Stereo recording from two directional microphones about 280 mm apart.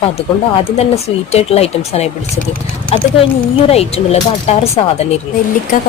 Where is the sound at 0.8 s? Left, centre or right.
Left.